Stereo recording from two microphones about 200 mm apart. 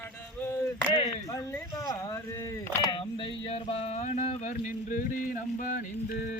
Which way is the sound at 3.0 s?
25° left (ahead or behind).